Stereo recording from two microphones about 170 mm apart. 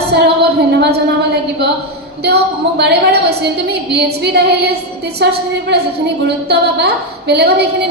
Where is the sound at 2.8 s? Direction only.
75° right (ahead or behind).